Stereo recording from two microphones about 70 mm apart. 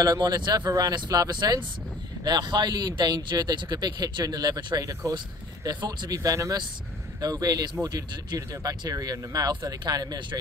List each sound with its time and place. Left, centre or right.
0.0 s speech: right
2.2 s speech: right
5.1 s speech: right
5.6 s speech: right
7.2 s speech: right